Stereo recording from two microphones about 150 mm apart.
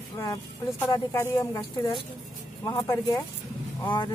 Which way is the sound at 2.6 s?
25° left (ahead or behind).